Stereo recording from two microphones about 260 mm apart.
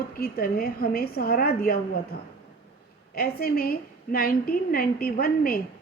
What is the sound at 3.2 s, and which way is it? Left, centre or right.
A woman's voice, left.